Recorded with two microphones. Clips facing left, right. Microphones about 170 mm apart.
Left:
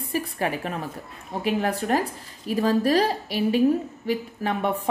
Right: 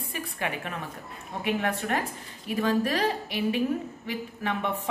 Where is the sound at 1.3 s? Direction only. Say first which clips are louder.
Left 4 dB; 35° left (ahead or behind).